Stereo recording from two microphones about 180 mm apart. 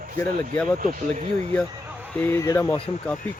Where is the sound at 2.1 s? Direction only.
15° left (ahead or behind).